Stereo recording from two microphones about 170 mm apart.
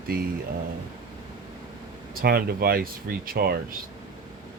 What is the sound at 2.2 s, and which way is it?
Speech, 60° right (ahead or behind).